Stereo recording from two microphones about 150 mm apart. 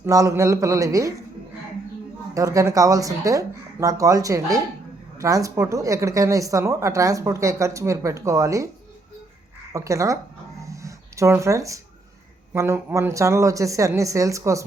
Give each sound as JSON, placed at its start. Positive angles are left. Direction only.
{"t": 0.0, "sound": "a woman's voice", "side_deg": -20}
{"t": 2.3, "sound": "a woman's voice", "side_deg": -20}
{"t": 9.7, "sound": "a woman's voice", "side_deg": -20}
{"t": 10.6, "sound": "music", "side_deg": -20}
{"t": 12.5, "sound": "a woman's voice", "side_deg": -20}